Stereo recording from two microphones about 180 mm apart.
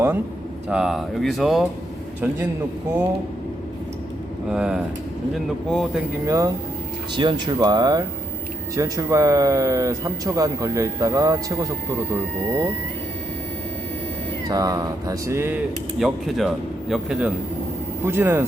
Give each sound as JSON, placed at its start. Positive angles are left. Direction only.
{"t": 0.7, "sound": "a man's voice", "side_deg": -5}
{"t": 4.4, "sound": "speech", "side_deg": -5}
{"t": 6.2, "sound": "a man's voice", "side_deg": -15}
{"t": 14.4, "sound": "speech", "side_deg": -20}
{"t": 16.0, "sound": "a man's voice", "side_deg": 0}